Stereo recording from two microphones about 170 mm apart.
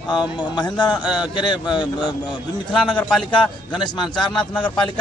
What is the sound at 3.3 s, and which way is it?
Speech, 25° left (ahead or behind).